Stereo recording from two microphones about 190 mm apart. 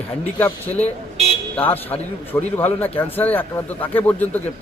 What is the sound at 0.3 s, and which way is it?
A man's voice, 10° left (ahead or behind).